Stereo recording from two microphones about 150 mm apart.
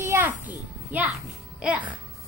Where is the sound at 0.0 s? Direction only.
15° right (ahead or behind).